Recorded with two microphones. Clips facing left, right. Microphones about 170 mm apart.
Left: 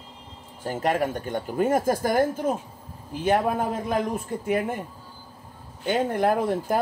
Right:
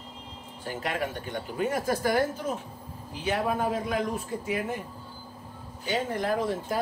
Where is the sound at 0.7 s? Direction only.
45° left (ahead or behind).